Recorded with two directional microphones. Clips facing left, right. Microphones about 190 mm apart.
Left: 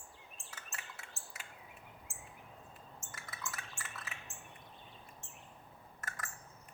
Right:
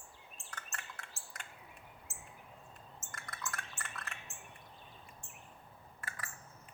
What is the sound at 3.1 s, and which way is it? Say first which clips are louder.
Drip: right 2 dB; 5° left (ahead or behind).